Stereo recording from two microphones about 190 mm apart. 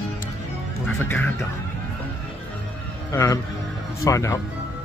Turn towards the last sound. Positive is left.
turn(degrees=15)  # may be behind; listen again after turning